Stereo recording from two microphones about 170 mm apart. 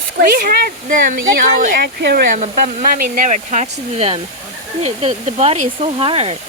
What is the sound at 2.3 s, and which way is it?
Speech, 45° right (ahead or behind).